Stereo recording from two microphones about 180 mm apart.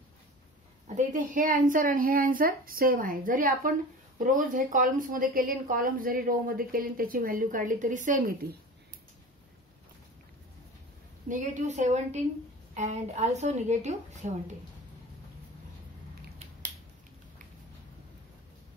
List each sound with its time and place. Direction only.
0.8 s a woman's voice: 45° right (ahead or behind)
11.2 s a woman's voice: 45° right (ahead or behind)